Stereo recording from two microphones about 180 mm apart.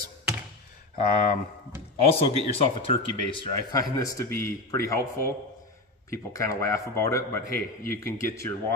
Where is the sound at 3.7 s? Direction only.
20° left (ahead or behind).